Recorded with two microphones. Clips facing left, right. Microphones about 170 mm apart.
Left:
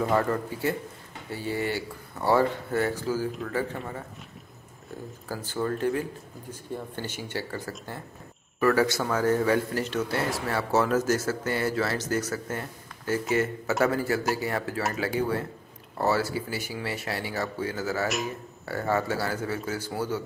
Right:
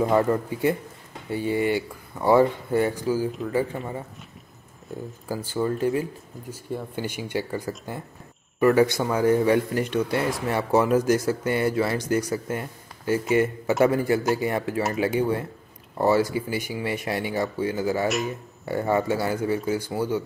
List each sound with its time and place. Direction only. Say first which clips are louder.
0.0 s a man's voice: right 4 dB; 15° right (ahead or behind)
5.3 s speech: right 4 dB; 10° right (ahead or behind)
18.0 s a man's voice: right 4 dB; centre (ahead or behind)
18.7 s speech: right 4 dB; 15° right (ahead or behind)